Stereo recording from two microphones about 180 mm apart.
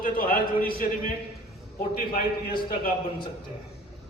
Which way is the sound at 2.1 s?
55° left (ahead or behind).